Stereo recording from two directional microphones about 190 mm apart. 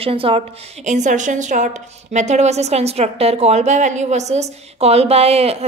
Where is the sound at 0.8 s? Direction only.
40° right (ahead or behind).